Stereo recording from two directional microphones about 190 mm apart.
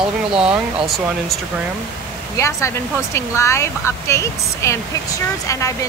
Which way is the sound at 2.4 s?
15° left (ahead or behind).